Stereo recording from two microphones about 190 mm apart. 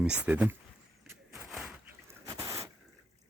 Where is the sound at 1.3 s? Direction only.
Centre (ahead or behind).